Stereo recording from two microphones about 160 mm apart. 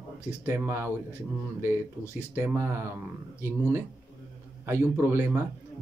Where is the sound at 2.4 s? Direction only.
15° right (ahead or behind).